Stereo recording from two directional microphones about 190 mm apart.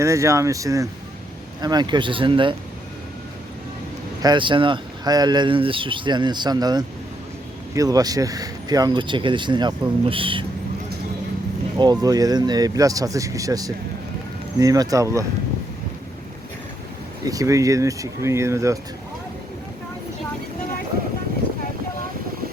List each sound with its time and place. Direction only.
0.0 s speech: 15° right (ahead or behind)
4.2 s speech: 25° right (ahead or behind)
11.8 s speech: 20° right (ahead or behind)
17.2 s speech: 15° right (ahead or behind)